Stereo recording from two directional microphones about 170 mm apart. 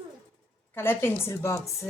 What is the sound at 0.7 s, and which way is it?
Speech, 15° left (ahead or behind).